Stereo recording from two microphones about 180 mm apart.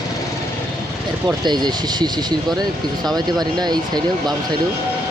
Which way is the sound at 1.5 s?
25° right (ahead or behind).